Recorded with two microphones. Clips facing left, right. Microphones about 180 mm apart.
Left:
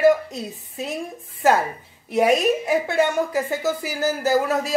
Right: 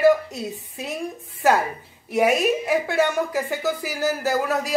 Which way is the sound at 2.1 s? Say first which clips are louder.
Left 1 dB; centre (ahead or behind).